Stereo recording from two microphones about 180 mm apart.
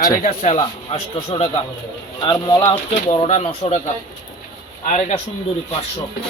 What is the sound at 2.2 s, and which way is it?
Speech, 20° left (ahead or behind).